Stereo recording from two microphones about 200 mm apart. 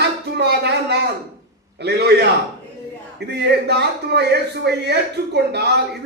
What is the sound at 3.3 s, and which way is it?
A man's voice, 55° right (ahead or behind).